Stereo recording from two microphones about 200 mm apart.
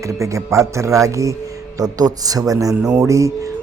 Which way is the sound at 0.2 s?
15° right (ahead or behind).